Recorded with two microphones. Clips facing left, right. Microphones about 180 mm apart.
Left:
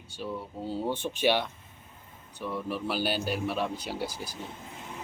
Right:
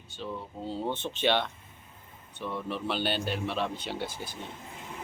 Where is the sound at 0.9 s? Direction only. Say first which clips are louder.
Left 2 dB; 20° right (ahead or behind).